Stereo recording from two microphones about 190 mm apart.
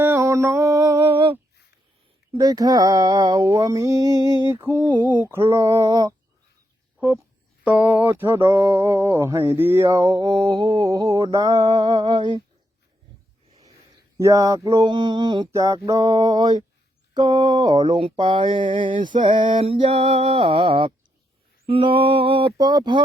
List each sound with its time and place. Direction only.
0.0 s a sound: 10° right (ahead or behind)
2.3 s mantra: 20° right (ahead or behind)
7.6 s mantra: 10° right (ahead or behind); by 12.4 s 25° right (ahead or behind)
14.2 s mantra: 15° right (ahead or behind)